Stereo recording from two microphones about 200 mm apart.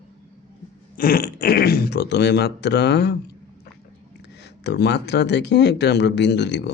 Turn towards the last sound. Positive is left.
turn(degrees=60)  # may be behind; listen again after turning